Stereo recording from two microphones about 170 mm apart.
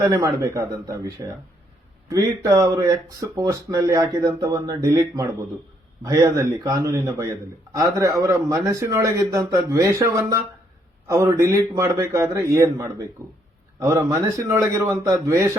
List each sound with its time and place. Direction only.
0.0 s a man's voice: 15° right (ahead or behind)